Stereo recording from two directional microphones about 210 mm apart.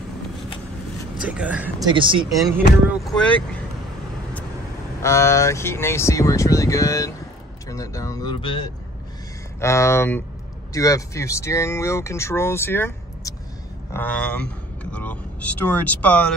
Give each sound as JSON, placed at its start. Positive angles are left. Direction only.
{"t": 1.2, "sound": "speech", "side_deg": -5}
{"t": 1.9, "sound": "speech", "side_deg": -25}
{"t": 2.9, "sound": "speech", "side_deg": 0}
{"t": 5.0, "sound": "speech", "side_deg": 15}